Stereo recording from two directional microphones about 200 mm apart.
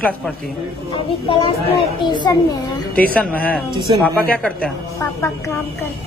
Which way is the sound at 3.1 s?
5° left (ahead or behind).